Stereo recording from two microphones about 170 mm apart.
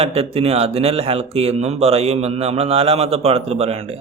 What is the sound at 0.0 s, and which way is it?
Speech, 35° right (ahead or behind).